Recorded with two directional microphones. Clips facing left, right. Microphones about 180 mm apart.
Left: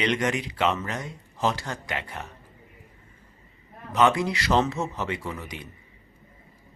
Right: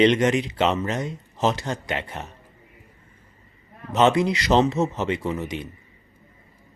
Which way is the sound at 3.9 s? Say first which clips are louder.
Right 3 dB; 20° right (ahead or behind).